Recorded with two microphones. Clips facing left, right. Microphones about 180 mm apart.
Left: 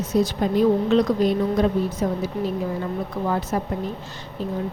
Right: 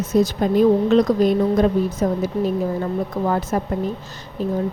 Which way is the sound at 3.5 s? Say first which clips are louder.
Right 3 dB; 50° right (ahead or behind).